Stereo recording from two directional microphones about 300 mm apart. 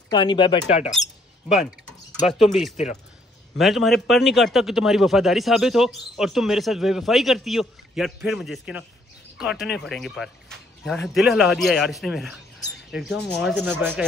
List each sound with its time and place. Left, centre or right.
0.1 s speech: centre
2.4 s a man's voice: centre